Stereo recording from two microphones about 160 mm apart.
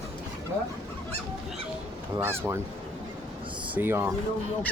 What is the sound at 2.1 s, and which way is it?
Speech, 15° right (ahead or behind).